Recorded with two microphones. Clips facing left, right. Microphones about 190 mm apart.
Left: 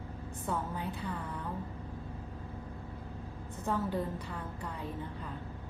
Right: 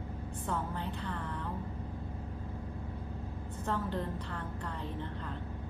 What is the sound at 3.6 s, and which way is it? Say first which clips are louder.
A woman's voice: left 2 dB; 10° left (ahead or behind).